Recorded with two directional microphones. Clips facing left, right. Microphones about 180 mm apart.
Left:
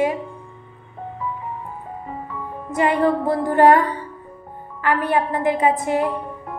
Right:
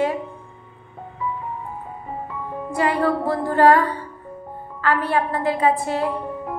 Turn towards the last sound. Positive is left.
turn(degrees=15)  # may be behind; listen again after turning